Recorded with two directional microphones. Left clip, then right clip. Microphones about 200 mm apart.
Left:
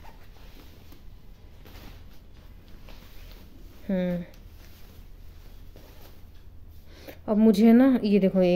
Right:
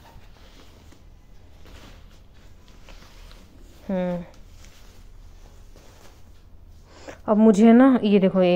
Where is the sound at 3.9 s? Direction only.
20° left (ahead or behind).